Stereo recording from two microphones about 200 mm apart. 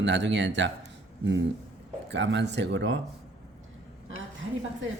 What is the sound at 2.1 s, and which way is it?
Speech, 60° right (ahead or behind).